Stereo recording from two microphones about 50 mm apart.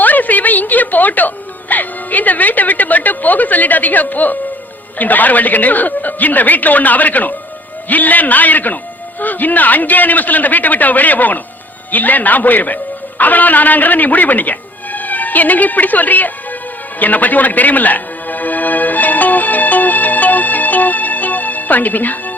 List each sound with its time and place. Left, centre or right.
0.0 s a sound: left
1.7 s a woman's voice: left
17.0 s music: left